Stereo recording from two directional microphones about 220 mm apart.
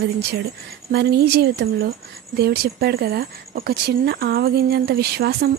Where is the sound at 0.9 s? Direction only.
45° right (ahead or behind).